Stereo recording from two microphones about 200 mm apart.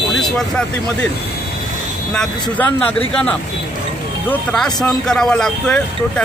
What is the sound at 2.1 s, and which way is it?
Speech, 5° left (ahead or behind).